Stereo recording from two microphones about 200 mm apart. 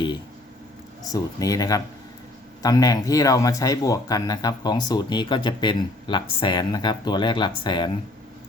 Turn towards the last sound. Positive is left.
turn(degrees=20)  # may be behind; listen again after turning